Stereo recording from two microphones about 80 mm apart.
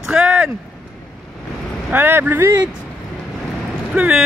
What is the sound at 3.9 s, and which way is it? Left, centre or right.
Speech, centre.